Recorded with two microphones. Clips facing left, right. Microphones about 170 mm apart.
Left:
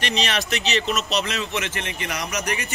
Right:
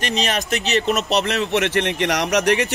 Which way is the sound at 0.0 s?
40° right (ahead or behind).